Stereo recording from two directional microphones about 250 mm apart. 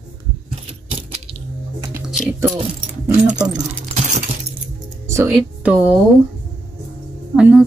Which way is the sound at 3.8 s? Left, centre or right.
Right.